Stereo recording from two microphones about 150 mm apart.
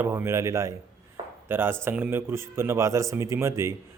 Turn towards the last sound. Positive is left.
turn(degrees=-20)  # may be behind; listen again after turning